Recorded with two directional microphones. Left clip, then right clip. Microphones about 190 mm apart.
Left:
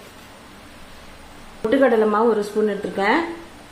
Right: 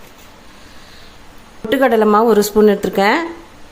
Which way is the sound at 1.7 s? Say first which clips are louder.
Right 4 dB; 50° right (ahead or behind).